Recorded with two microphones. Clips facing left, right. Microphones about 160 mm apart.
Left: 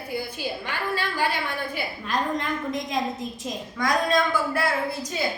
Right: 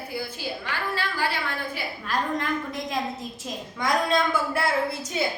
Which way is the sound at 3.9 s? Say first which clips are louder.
Left 1 dB; 25° right (ahead or behind).